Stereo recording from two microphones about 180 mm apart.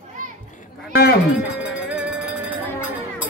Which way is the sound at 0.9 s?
60° left (ahead or behind).